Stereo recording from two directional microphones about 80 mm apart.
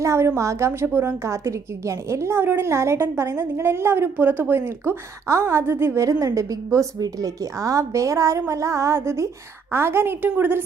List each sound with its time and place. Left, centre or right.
0.0 s a woman's voice: right
6.1 s a woman's voice: right